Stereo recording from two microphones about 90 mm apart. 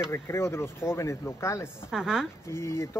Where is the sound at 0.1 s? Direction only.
30° left (ahead or behind).